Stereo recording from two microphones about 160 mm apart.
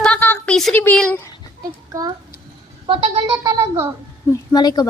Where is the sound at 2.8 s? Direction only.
35° right (ahead or behind); by 3.9 s 15° right (ahead or behind).